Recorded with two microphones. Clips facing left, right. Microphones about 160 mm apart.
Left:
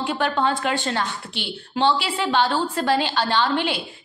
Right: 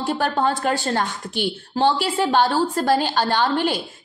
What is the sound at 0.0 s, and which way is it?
A woman's voice, 40° right (ahead or behind).